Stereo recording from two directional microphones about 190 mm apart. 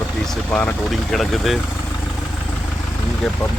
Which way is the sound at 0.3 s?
5° left (ahead or behind).